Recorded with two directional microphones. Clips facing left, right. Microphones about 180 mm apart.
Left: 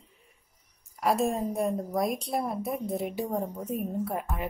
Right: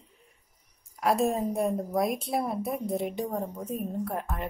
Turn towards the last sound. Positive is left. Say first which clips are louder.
# left 1 dB
turn(degrees=5)  # may be behind; listen again after turning